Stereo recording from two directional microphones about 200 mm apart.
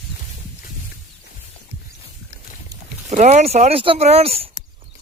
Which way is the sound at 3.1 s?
35° right (ahead or behind).